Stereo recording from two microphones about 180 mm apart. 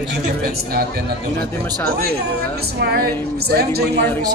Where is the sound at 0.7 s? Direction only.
60° right (ahead or behind).